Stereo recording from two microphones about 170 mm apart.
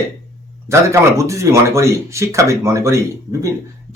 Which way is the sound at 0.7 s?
15° right (ahead or behind).